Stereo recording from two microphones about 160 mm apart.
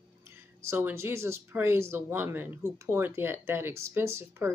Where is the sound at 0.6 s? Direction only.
15° right (ahead or behind).